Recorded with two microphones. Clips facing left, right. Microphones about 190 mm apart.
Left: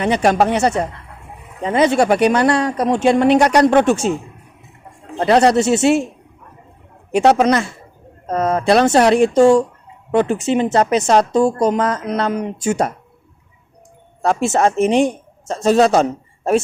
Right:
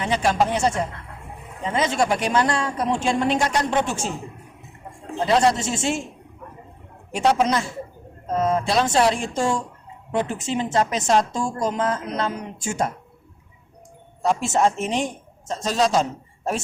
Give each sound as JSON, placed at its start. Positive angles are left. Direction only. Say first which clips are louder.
{"t": 0.0, "sound": "speech", "louder": "left 6 dB", "side_deg": 65}
{"t": 5.1, "sound": "speech", "louder": "left 6 dB", "side_deg": 70}
{"t": 7.1, "sound": "speech", "louder": "left 7 dB", "side_deg": 70}
{"t": 14.2, "sound": "speech", "louder": "left 4 dB", "side_deg": 75}